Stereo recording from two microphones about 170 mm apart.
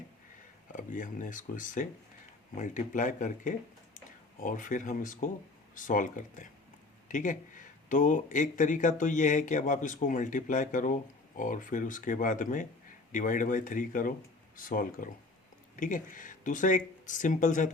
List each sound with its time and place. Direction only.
0.7 s speech: 50° left (ahead or behind)